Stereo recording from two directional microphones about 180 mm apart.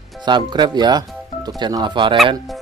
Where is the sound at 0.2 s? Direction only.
25° right (ahead or behind).